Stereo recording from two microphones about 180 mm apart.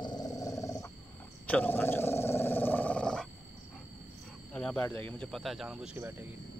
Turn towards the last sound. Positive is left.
turn(degrees=-5)  # may be behind; listen again after turning